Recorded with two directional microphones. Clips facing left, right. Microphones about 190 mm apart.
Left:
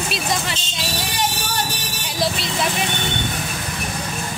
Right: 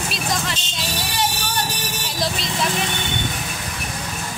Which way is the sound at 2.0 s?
5° left (ahead or behind).